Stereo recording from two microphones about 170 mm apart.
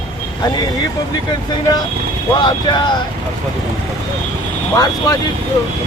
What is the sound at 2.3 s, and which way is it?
Speech, 25° left (ahead or behind).